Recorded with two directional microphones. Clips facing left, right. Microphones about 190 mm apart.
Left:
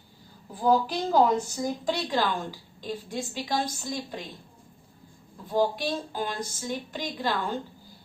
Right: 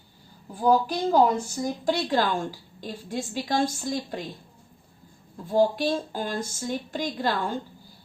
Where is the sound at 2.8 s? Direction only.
50° right (ahead or behind).